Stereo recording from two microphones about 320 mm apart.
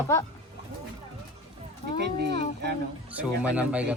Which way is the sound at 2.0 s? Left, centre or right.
Right.